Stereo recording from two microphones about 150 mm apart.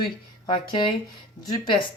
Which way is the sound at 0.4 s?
35° left (ahead or behind).